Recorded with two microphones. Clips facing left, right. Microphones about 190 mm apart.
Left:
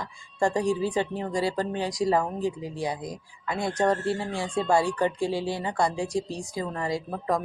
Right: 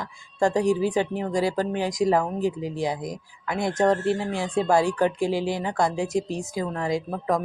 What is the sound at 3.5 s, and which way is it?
Speech, 20° right (ahead or behind).